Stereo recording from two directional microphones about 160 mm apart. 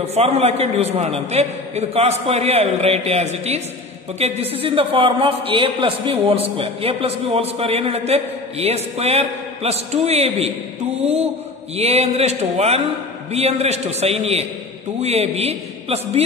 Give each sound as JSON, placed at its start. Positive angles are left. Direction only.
{"t": 0.0, "sound": "a man's voice", "side_deg": -40}
{"t": 11.7, "sound": "a man's voice", "side_deg": -40}